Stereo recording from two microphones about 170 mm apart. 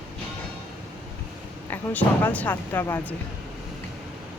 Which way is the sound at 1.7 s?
10° left (ahead or behind).